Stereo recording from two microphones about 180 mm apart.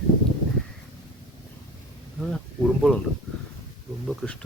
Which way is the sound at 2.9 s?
5° left (ahead or behind).